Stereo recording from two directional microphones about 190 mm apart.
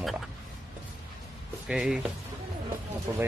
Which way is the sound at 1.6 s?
5° right (ahead or behind).